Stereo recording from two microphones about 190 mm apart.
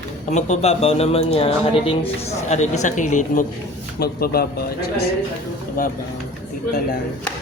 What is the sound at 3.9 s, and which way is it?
Speech, 55° left (ahead or behind).